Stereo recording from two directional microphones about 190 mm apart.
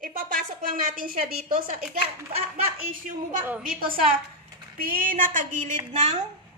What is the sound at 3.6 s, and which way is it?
A woman's voice, 45° right (ahead or behind).